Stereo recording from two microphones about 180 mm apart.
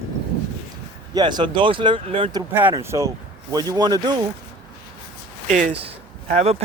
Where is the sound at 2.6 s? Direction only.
10° right (ahead or behind).